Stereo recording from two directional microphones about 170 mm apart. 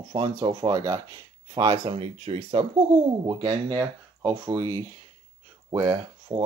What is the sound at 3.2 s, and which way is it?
Speech, 20° right (ahead or behind).